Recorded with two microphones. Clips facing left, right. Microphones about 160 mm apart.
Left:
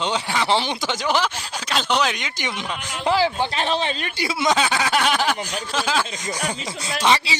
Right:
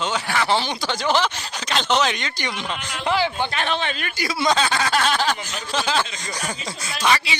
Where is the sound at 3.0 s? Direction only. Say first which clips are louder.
Left 2 dB; 35° left (ahead or behind); by 6.6 s 15° left (ahead or behind).